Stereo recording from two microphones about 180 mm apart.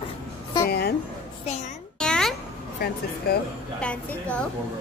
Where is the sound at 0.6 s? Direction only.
65° left (ahead or behind).